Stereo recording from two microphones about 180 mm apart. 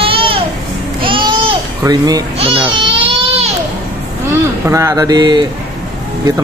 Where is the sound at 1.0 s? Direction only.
25° right (ahead or behind).